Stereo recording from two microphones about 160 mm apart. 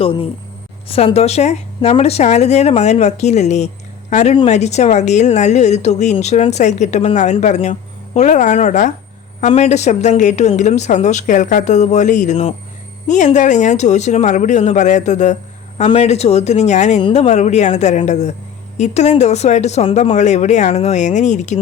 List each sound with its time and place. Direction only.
0.0 s speech: 35° left (ahead or behind)